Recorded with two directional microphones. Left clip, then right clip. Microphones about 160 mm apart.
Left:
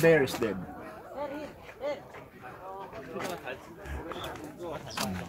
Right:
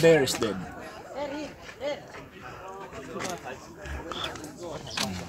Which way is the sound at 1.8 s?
70° right (ahead or behind).